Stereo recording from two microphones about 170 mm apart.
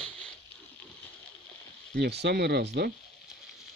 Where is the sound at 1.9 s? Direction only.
80° right.